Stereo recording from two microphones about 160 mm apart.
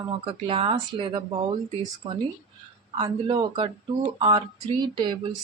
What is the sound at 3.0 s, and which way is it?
A woman's voice, 30° right (ahead or behind).